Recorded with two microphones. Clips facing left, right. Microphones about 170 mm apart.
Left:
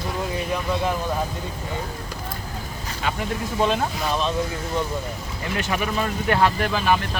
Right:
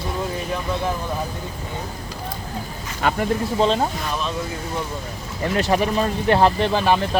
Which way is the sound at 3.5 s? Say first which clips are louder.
Right 2 dB; 25° right (ahead or behind).